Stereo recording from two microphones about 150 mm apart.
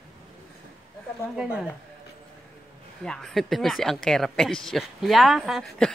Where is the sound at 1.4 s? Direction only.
5° right (ahead or behind).